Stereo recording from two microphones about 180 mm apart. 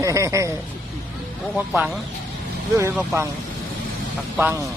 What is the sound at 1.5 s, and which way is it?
Speech, 5° right (ahead or behind).